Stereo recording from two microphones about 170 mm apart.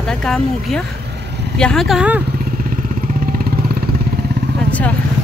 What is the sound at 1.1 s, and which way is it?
Vehicle, 80° right.